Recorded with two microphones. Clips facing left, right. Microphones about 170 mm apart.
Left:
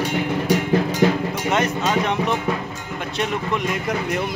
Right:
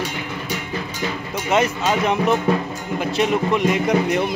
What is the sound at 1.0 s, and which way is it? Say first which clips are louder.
Speech: left 9 dB; 65° left (ahead or behind).